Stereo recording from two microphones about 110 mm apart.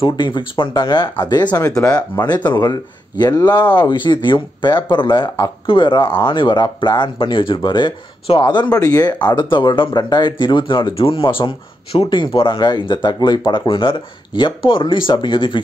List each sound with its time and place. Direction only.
0.1 s speech: 45° left (ahead or behind)
1.7 s speech: 10° left (ahead or behind)
2.0 s speech: 35° left (ahead or behind)
8.7 s speech: 35° left (ahead or behind)